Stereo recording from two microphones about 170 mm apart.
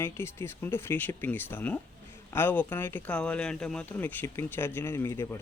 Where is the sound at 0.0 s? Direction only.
15° left (ahead or behind).